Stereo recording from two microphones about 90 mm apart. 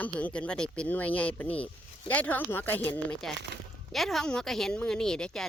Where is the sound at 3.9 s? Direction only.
Centre (ahead or behind).